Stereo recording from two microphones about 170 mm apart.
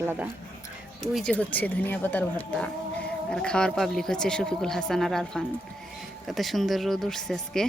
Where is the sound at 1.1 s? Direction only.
5° left (ahead or behind).